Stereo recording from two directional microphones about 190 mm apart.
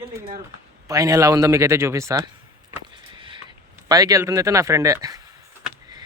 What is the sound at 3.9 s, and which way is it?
Speech, 20° right (ahead or behind).